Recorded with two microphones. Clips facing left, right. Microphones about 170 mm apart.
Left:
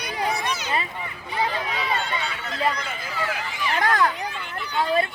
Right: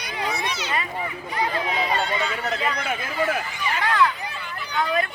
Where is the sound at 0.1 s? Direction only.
40° left (ahead or behind).